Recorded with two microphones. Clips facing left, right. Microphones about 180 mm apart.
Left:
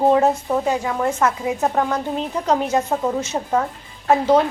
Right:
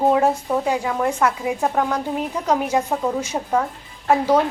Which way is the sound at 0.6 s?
10° right (ahead or behind).